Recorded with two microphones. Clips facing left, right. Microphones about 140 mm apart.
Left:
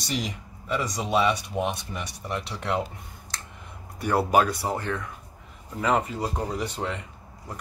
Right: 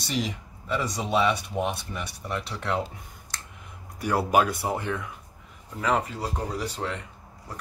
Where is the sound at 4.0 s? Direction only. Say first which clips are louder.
Left 2 dB; centre (ahead or behind).